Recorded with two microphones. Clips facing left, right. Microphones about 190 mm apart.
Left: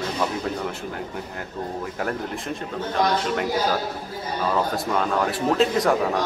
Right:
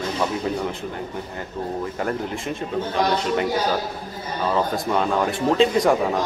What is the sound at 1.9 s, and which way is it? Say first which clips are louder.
Speech: right 2 dB; centre (ahead or behind).